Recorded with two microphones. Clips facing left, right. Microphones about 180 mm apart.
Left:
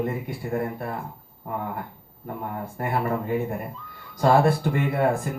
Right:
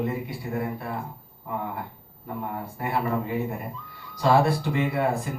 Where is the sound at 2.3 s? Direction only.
50° left (ahead or behind).